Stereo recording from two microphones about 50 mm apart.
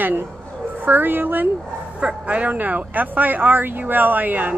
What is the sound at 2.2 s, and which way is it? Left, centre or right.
Speech, right.